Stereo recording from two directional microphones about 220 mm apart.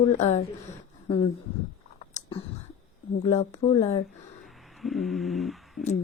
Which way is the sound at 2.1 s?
25° left (ahead or behind).